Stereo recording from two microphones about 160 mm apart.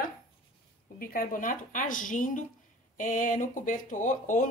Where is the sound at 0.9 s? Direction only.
60° left (ahead or behind).